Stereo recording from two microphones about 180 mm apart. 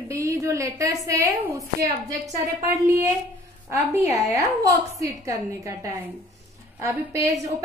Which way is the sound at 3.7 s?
15° right (ahead or behind).